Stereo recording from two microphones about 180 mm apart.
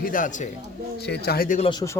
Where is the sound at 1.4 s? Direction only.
40° left (ahead or behind).